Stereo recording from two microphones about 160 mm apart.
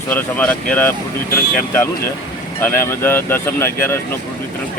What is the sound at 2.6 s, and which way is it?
A woman's voice, 15° left (ahead or behind).